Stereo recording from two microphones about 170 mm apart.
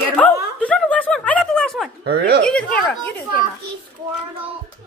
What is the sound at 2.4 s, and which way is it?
Speech, 5° left (ahead or behind).